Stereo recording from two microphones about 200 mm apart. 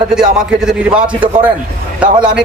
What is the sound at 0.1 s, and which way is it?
A man's voice, 5° right (ahead or behind).